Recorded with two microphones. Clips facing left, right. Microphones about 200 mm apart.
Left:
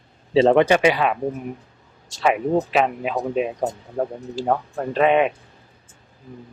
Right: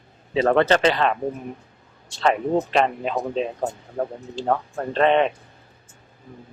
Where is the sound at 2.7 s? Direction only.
5° left (ahead or behind).